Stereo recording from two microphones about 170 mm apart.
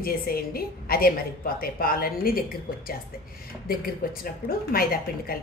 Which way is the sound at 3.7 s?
60° left (ahead or behind).